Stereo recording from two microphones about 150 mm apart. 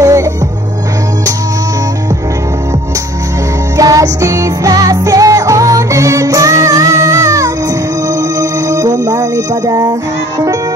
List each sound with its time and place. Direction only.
0.0 s music: 20° right (ahead or behind)
3.7 s music: 25° right (ahead or behind)